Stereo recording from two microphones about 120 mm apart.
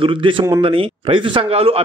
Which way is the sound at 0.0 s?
45° right (ahead or behind).